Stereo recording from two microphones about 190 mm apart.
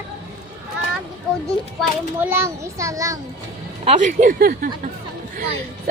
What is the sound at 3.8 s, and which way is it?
Speech, 35° right (ahead or behind).